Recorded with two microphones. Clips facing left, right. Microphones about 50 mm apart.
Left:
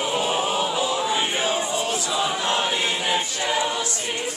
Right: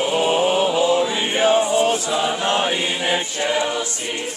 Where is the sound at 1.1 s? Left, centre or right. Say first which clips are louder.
Right 6 dB; right.